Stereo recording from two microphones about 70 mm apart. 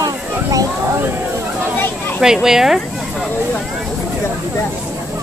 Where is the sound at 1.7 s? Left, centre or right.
Left.